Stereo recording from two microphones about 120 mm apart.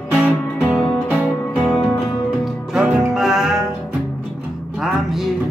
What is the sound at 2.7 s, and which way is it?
Music, 5° right (ahead or behind).